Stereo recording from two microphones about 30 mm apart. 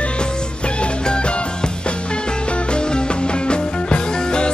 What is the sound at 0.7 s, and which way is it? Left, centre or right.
Music, left.